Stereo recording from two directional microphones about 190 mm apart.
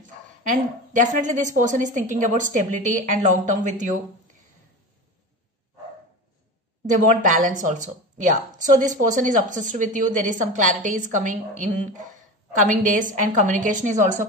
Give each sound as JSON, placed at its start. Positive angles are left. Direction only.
{"t": 0.4, "sound": "a woman's voice", "side_deg": -40}
{"t": 6.9, "sound": "a woman's voice", "side_deg": -45}